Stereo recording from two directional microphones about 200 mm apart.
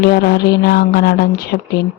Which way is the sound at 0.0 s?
50° left (ahead or behind).